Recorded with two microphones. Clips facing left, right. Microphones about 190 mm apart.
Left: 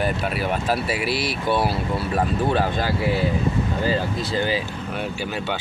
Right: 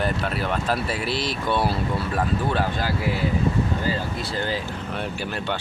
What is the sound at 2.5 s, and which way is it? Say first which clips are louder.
Speech: left 3 dB; 20° left (ahead or behind).